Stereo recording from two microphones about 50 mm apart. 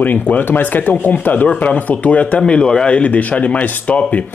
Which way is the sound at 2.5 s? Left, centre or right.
Centre.